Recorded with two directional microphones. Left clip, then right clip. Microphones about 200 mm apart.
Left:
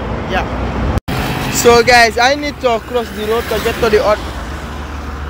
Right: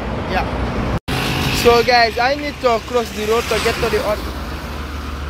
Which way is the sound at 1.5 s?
20° left (ahead or behind).